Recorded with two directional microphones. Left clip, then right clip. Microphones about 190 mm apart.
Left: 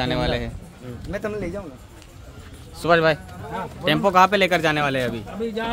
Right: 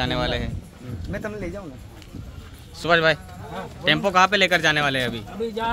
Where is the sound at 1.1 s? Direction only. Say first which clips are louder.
Left 3 dB; 50° left (ahead or behind).